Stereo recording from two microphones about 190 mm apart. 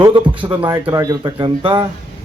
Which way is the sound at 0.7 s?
15° right (ahead or behind).